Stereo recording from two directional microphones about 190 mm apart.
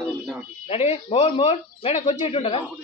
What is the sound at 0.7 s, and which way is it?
Speech, 30° left (ahead or behind).